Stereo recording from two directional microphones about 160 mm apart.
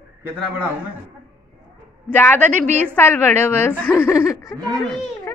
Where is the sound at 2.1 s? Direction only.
10° left (ahead or behind).